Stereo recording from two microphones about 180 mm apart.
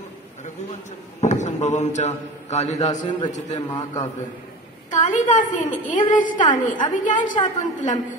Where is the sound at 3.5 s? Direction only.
20° left (ahead or behind).